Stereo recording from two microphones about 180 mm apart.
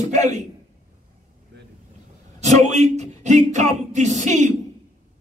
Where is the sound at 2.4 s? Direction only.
40° right (ahead or behind).